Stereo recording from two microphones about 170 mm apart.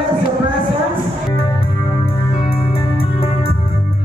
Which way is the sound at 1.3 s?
30° left (ahead or behind).